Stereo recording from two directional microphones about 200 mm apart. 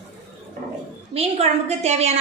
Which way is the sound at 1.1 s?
30° right (ahead or behind).